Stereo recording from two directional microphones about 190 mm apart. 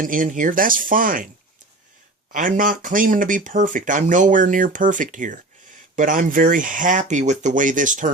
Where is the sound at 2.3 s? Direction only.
45° right (ahead or behind).